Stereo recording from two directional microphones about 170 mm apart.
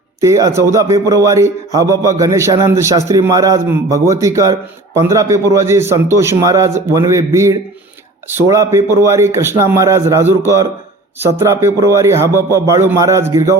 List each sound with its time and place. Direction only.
0.2 s a man's voice: 20° right (ahead or behind)